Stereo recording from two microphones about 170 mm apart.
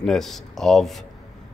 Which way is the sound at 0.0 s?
Centre (ahead or behind).